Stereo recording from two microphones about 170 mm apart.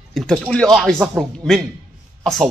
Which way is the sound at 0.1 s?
Centre (ahead or behind).